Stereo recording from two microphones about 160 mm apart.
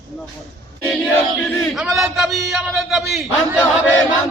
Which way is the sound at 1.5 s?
Centre (ahead or behind).